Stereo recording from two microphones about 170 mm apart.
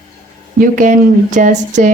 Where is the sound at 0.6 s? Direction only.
50° right (ahead or behind).